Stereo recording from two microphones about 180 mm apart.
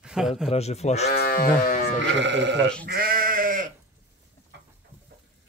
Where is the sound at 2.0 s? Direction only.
85° right.